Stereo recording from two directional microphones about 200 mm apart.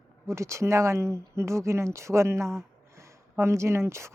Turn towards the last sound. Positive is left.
turn(degrees=-15)  # may be behind; listen again after turning